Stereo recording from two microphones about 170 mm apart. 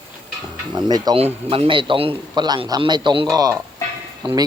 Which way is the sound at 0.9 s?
25° right (ahead or behind).